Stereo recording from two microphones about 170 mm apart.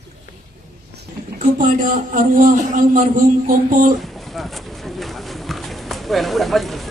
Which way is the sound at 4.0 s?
Centre (ahead or behind).